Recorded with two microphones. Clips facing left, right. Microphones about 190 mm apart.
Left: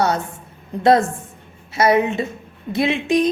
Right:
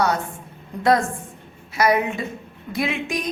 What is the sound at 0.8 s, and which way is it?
A woman's voice, 25° left (ahead or behind).